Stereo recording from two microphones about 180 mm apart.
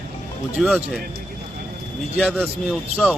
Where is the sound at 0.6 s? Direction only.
Centre (ahead or behind).